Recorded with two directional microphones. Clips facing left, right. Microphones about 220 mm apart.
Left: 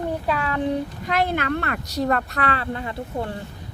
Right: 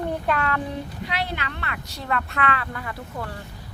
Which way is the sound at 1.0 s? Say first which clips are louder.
Left 7 dB; 50° left (ahead or behind).